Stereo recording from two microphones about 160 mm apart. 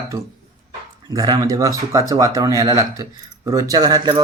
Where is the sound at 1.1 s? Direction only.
25° right (ahead or behind).